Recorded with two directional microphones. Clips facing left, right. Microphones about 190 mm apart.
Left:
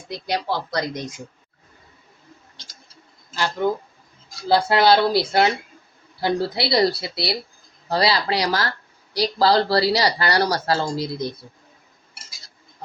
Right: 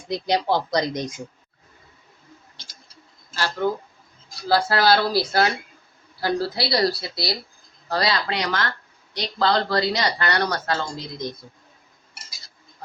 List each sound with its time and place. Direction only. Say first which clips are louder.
0.3 s speech: right 3 dB; 20° right (ahead or behind)
3.3 s speech: left 2 dB; 15° left (ahead or behind); by 11.3 s 30° left (ahead or behind)